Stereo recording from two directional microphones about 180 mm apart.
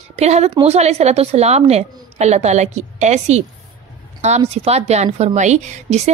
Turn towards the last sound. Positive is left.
turn(degrees=-40)  # may be behind; listen again after turning